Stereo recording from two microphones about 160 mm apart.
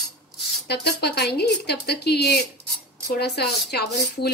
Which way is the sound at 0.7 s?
90° left.